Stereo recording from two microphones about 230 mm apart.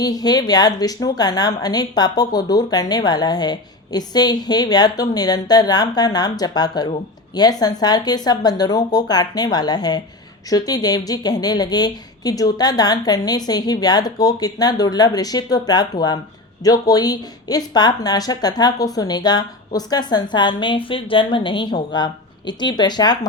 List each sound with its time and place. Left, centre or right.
0.0 s a woman's voice: centre